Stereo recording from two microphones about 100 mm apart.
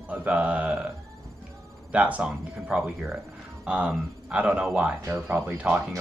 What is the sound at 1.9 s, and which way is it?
Speech, 15° right (ahead or behind).